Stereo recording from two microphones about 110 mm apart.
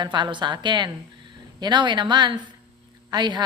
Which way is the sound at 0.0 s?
45° right (ahead or behind).